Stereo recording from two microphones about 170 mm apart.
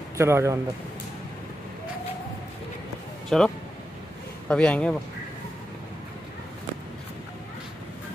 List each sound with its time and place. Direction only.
0.2 s a man's voice: 15° right (ahead or behind)
3.3 s speech: 5° left (ahead or behind)